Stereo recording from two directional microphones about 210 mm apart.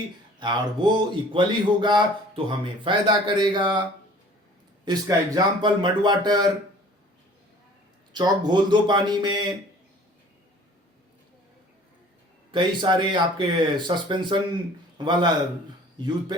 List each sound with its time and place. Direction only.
0.3 s a man's voice: 20° right (ahead or behind)
4.9 s a man's voice: 20° right (ahead or behind)
8.1 s a man's voice: 20° right (ahead or behind)
12.5 s a man's voice: 20° right (ahead or behind)